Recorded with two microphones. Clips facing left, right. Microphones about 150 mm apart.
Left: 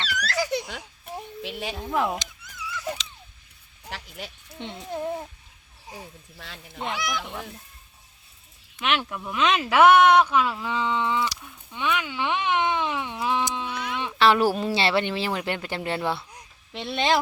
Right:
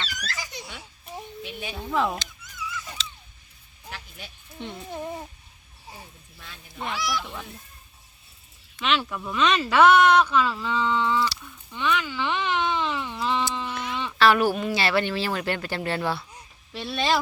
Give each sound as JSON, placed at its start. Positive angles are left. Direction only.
{"t": 0.1, "sound": "baby laughter", "side_deg": 70}
{"t": 1.4, "sound": "speech", "side_deg": 90}
{"t": 1.9, "sound": "speech", "side_deg": 15}
{"t": 3.8, "sound": "a sound", "side_deg": 90}
{"t": 4.5, "sound": "speech", "side_deg": 20}
{"t": 6.7, "sound": "speech", "side_deg": 20}
{"t": 8.7, "sound": "speech", "side_deg": 15}
{"t": 13.7, "sound": "sheep", "side_deg": 0}
{"t": 14.0, "sound": "speech", "side_deg": 25}